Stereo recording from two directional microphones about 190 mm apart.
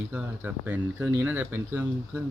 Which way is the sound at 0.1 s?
10° right (ahead or behind).